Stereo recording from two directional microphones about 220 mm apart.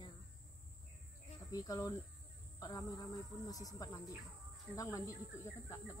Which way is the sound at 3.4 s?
15° left (ahead or behind).